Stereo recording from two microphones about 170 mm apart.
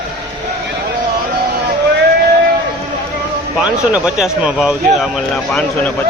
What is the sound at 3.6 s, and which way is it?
Speech, 5° right (ahead or behind).